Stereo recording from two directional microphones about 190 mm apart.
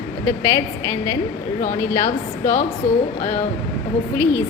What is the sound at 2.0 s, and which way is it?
A woman's voice, 40° left (ahead or behind).